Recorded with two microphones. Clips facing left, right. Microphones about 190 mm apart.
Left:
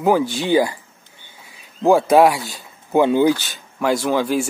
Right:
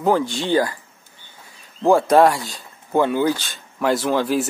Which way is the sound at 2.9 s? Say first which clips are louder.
Left 4 dB; 15° left (ahead or behind).